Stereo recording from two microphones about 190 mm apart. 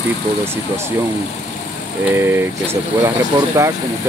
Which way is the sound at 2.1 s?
10° right (ahead or behind).